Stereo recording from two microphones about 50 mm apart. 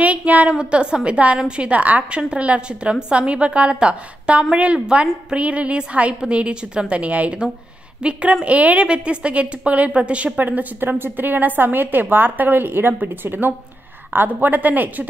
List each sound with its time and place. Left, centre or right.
0.0 s a woman's voice: right